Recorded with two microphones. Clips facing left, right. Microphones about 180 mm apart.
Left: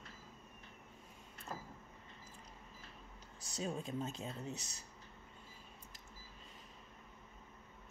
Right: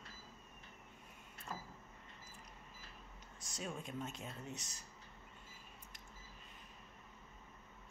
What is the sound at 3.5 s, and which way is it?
Speech, 30° left (ahead or behind).